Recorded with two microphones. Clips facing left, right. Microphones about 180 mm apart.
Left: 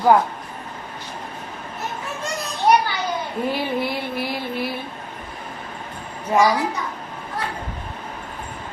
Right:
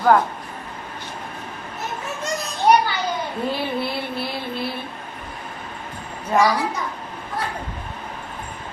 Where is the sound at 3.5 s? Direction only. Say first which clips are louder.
Left 1 dB; 15° left (ahead or behind).